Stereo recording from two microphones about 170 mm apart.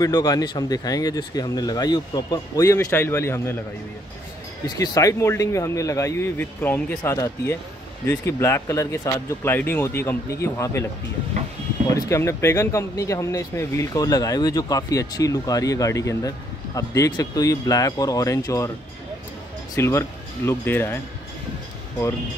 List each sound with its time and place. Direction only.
0.0 s speech: 20° left (ahead or behind)
4.6 s speech: 20° left (ahead or behind)
11.9 s speech: 15° left (ahead or behind)
19.7 s speech: 15° left (ahead or behind)